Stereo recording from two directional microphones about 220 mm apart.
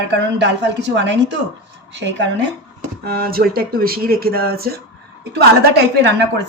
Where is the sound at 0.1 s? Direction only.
55° right (ahead or behind).